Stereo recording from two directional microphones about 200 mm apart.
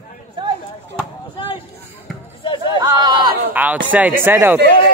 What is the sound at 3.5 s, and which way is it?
Speech, 10° right (ahead or behind).